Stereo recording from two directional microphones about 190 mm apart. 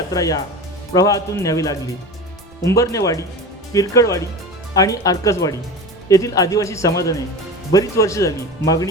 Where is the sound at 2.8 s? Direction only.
15° left (ahead or behind).